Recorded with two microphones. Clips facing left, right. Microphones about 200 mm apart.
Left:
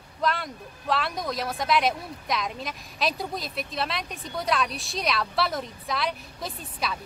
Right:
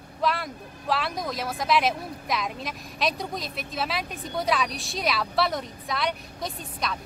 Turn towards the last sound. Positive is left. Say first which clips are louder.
# right 1 dB
turn(degrees=0)  # may be behind; listen again after turning